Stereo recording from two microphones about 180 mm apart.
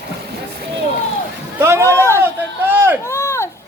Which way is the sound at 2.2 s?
10° right (ahead or behind).